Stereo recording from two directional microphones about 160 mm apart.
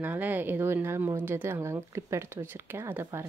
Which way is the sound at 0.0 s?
10° right (ahead or behind).